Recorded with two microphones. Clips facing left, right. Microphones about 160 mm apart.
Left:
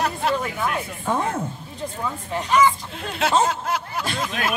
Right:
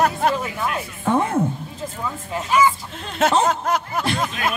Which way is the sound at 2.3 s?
5° right (ahead or behind).